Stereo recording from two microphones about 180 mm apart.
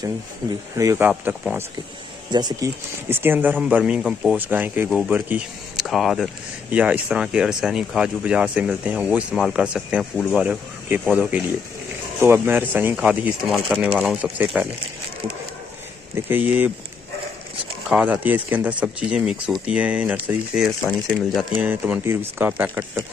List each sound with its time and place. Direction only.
0.7 s speech: 15° right (ahead or behind)
2.3 s speech: 25° right (ahead or behind)
3.1 s speech: 10° right (ahead or behind)
16.2 s speech: 10° right (ahead or behind)
17.8 s speech: 5° right (ahead or behind)